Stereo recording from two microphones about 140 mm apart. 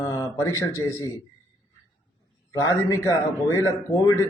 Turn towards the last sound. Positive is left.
turn(degrees=20)  # may be behind; listen again after turning